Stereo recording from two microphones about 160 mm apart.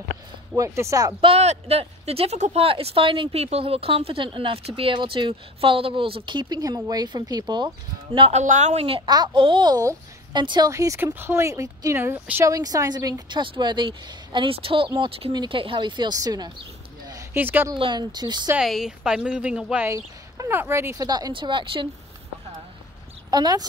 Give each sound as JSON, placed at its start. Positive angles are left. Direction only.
{"t": 0.6, "sound": "speech", "side_deg": -20}
{"t": 1.2, "sound": "speech", "side_deg": -40}
{"t": 8.3, "sound": "speech", "side_deg": -45}
{"t": 17.7, "sound": "speech", "side_deg": -30}
{"t": 18.6, "sound": "a woman's voice", "side_deg": 0}
{"t": 23.3, "sound": "speech", "side_deg": -25}